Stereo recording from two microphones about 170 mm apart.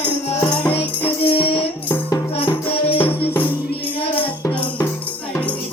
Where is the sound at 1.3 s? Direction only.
30° left (ahead or behind).